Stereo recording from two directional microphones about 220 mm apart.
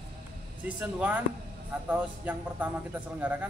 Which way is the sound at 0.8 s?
5° right (ahead or behind).